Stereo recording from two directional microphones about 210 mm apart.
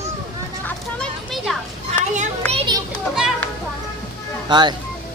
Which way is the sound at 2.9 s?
Centre (ahead or behind).